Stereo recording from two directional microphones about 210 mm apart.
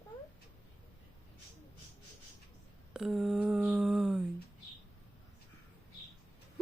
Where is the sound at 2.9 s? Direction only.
Centre (ahead or behind).